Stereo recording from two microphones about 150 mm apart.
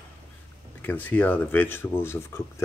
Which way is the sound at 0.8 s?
10° left (ahead or behind).